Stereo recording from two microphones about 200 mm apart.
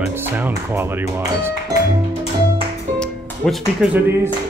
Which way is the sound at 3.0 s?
5° left (ahead or behind).